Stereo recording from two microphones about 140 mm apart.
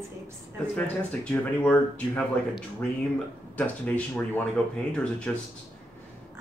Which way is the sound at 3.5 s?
10° left (ahead or behind).